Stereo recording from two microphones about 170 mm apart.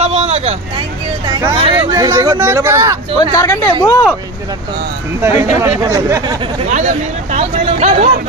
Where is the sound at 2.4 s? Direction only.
15° right (ahead or behind).